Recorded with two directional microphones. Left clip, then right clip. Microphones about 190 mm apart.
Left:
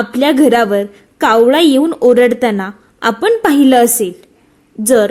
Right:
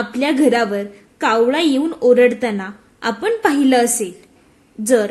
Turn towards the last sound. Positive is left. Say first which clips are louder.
# left 5 dB
turn(degrees=35)  # may be behind; listen again after turning